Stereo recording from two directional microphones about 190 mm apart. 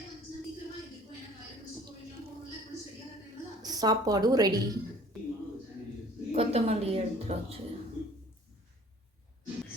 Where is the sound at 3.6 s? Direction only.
20° right (ahead or behind).